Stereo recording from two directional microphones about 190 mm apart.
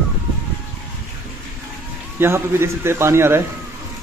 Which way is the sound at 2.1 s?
10° right (ahead or behind).